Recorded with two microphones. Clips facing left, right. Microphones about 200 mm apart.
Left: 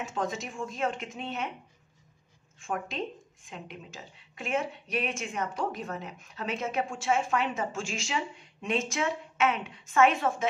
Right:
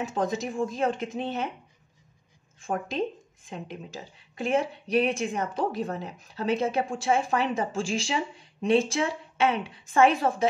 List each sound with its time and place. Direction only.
0.0 s speech: 35° right (ahead or behind)
2.6 s speech: 35° right (ahead or behind)